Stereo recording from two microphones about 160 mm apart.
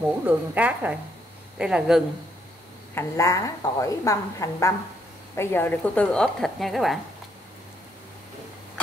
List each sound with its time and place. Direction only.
0.2 s a woman's voice: 10° right (ahead or behind)
2.9 s a woman's voice: 15° left (ahead or behind); by 7.0 s centre (ahead or behind)